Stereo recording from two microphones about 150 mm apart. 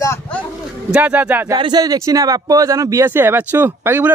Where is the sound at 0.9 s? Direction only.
10° right (ahead or behind).